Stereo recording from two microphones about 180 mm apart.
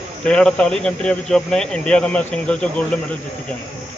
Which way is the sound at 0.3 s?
5° left (ahead or behind).